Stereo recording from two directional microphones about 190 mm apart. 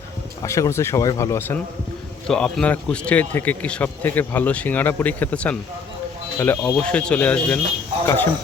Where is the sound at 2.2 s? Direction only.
5° left (ahead or behind).